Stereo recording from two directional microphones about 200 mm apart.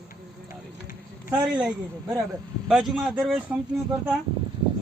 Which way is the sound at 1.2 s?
5° right (ahead or behind).